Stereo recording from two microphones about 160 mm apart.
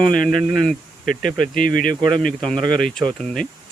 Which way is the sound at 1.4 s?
60° left (ahead or behind).